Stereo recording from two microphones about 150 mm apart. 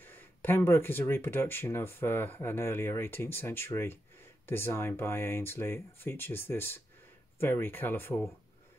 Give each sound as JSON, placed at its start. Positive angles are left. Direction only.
{"t": 0.0, "sound": "speech", "side_deg": 15}